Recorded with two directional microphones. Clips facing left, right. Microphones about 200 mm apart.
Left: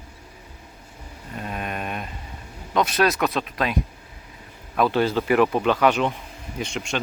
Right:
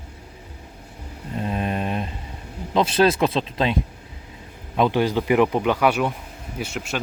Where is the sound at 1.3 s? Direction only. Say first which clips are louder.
Right 5 dB; 30° right (ahead or behind).